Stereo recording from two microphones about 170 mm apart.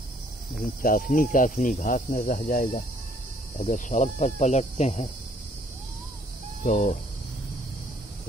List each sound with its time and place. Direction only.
0.8 s speech: 55° left (ahead or behind)
6.6 s speech: 50° left (ahead or behind)